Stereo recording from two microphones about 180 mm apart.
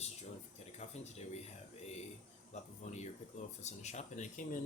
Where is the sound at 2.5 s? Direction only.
40° left (ahead or behind).